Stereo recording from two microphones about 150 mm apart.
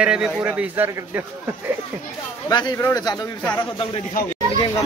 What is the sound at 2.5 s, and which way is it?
Speech, 30° left (ahead or behind).